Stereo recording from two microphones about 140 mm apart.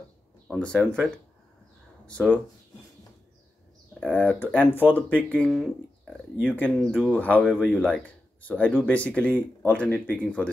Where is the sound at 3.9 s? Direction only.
10° left (ahead or behind).